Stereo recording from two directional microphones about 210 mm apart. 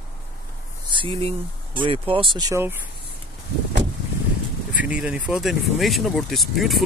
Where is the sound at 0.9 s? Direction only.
25° right (ahead or behind).